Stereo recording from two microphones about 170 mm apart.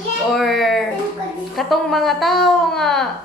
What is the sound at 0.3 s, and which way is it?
A child's voice, centre (ahead or behind).